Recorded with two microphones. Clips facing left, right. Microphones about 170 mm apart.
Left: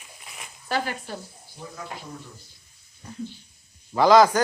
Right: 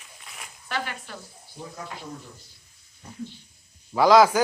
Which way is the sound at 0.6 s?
35° left (ahead or behind).